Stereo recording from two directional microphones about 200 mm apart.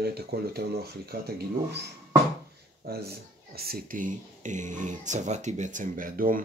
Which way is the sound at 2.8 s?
55° right (ahead or behind).